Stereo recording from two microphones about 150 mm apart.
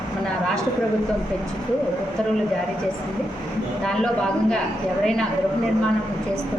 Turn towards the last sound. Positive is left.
turn(degrees=5)  # may be behind; listen again after turning